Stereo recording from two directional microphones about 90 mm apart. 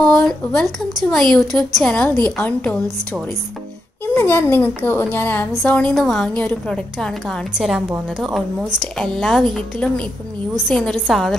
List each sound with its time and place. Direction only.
0.0 s a woman's voice: 10° left (ahead or behind)
1.9 s speech: 15° left (ahead or behind)
4.1 s a woman's voice: 25° left (ahead or behind)
5.9 s a woman's voice: 5° left (ahead or behind)
7.5 s a woman's voice: 5° right (ahead or behind)